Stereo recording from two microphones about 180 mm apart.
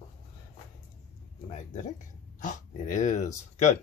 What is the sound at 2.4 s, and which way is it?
Speech, 45° left (ahead or behind).